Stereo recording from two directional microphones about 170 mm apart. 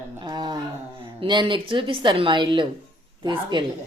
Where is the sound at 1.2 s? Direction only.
30° right (ahead or behind).